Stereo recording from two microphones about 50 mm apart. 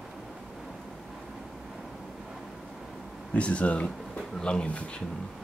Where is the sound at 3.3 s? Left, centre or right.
Left.